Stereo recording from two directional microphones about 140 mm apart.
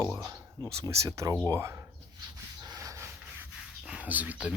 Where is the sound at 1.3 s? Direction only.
15° left (ahead or behind).